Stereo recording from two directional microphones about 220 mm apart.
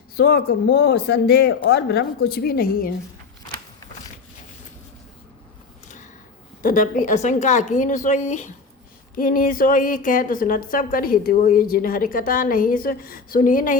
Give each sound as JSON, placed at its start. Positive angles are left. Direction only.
{"t": 0.2, "sound": "speech", "side_deg": 45}
{"t": 6.6, "sound": "a woman's voice", "side_deg": 40}